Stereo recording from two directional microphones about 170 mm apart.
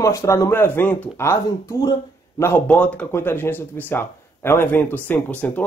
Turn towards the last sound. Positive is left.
turn(degrees=10)  # may be behind; listen again after turning